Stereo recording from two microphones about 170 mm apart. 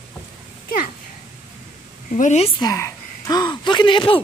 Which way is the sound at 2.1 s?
45° left (ahead or behind).